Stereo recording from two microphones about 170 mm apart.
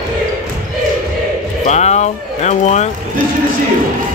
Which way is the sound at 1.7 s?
40° left (ahead or behind).